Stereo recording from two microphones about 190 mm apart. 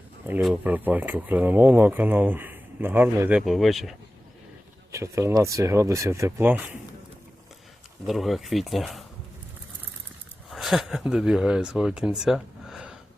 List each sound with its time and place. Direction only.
0.4 s speech: 10° right (ahead or behind)
4.9 s speech: 15° right (ahead or behind)
8.0 s speech: centre (ahead or behind)
10.5 s speech: centre (ahead or behind)